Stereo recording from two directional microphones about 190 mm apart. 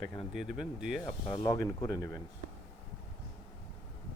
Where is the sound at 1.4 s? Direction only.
20° left (ahead or behind).